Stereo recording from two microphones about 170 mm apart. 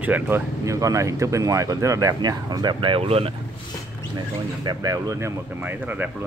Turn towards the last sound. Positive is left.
turn(degrees=-10)  # may be behind; listen again after turning